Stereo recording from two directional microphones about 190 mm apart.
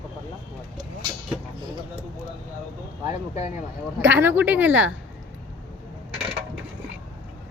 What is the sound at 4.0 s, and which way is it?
Speech, 10° right (ahead or behind).